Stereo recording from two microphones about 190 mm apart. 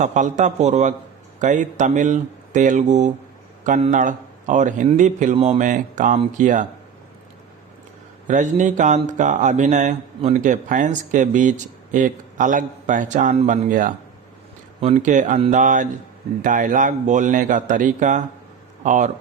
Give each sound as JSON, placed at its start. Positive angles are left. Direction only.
{"t": 0.0, "sound": "speech", "side_deg": -40}
{"t": 8.3, "sound": "speech", "side_deg": -40}